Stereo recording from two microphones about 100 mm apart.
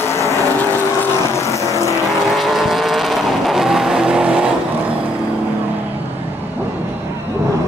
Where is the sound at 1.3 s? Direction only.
30° left (ahead or behind).